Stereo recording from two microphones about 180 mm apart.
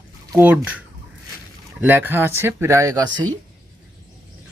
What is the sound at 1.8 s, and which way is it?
Speech, 10° right (ahead or behind).